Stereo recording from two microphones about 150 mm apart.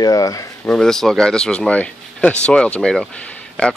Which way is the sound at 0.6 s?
5° left (ahead or behind).